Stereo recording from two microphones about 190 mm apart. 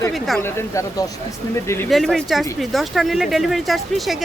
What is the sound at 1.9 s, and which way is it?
Speech, centre (ahead or behind).